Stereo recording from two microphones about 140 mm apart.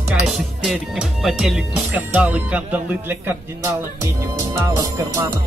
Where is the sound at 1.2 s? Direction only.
Centre (ahead or behind).